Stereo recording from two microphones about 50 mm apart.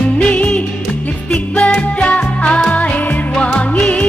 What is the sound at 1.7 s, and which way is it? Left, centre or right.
Music, left.